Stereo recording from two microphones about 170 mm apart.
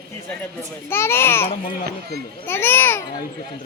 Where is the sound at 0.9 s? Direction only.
15° left (ahead or behind).